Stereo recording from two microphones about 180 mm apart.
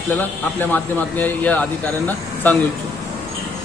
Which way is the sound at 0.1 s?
10° left (ahead or behind).